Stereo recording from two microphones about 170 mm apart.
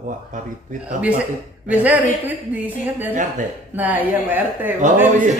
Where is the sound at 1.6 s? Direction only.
10° right (ahead or behind).